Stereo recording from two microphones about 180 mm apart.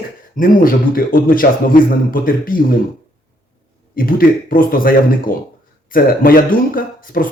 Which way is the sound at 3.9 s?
50° left (ahead or behind).